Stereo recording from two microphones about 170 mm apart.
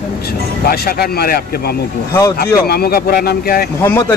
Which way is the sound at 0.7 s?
65° left (ahead or behind).